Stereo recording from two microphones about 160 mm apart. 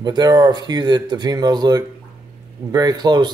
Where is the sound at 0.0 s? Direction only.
25° right (ahead or behind).